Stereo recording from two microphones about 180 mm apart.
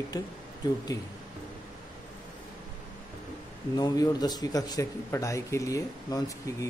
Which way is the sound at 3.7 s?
20° left (ahead or behind).